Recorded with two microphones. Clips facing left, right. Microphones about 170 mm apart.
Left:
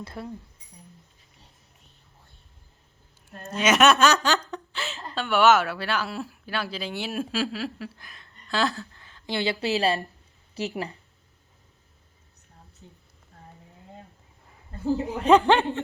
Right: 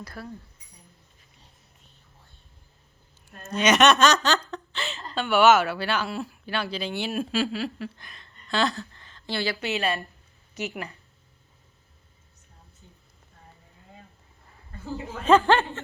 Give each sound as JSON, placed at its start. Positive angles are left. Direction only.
{"t": 0.0, "sound": "speech", "side_deg": 20}
{"t": 3.5, "sound": "snicker", "side_deg": 5}
{"t": 4.5, "sound": "speech", "side_deg": 5}
{"t": 14.8, "sound": "speech", "side_deg": 15}